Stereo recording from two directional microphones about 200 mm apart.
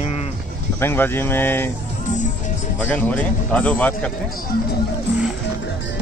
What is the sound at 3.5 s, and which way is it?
Speech, 5° left (ahead or behind).